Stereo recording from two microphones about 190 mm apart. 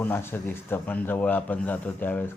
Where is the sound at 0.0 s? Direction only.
10° left (ahead or behind).